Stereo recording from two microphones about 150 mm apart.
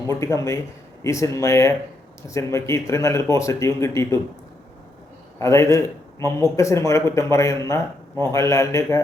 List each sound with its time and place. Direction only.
0.1 s speech: 20° left (ahead or behind)
5.4 s speech: 20° left (ahead or behind)